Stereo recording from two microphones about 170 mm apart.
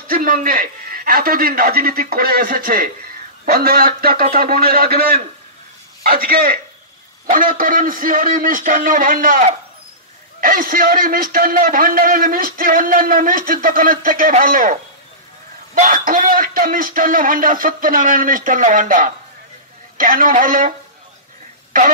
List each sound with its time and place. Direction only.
0.1 s a man's voice: 55° right (ahead or behind)
15.8 s speech: 50° right (ahead or behind)